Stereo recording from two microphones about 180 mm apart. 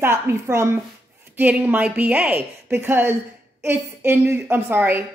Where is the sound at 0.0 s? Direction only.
15° right (ahead or behind).